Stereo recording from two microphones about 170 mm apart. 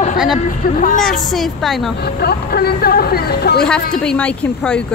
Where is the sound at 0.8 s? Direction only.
55° left (ahead or behind).